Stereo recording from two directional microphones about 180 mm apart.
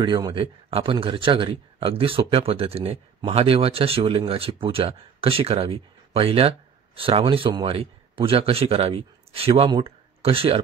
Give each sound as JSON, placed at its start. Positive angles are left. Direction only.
{"t": 0.0, "sound": "a man's voice", "side_deg": -25}